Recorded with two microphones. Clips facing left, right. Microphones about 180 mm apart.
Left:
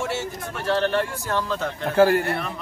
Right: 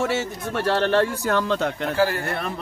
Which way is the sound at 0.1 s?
85° right.